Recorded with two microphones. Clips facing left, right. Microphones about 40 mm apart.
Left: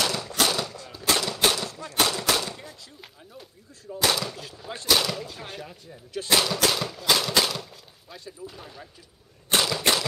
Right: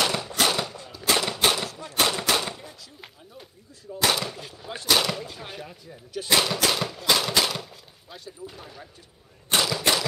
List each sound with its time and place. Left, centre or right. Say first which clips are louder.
0.0 s a sound: right 1 dB; centre
1.1 s typewriter: right 2 dB; right
1.4 s gunshot: right 1 dB; centre
4.0 s artillery fire: right 1 dB; centre
4.8 s gunshot: right 1 dB; centre